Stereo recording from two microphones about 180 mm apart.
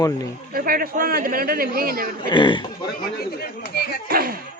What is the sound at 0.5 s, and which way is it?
A man's voice, 55° right (ahead or behind).